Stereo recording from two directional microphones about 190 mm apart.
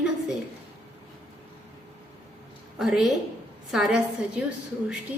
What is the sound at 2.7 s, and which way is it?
A woman's voice, 5° right (ahead or behind).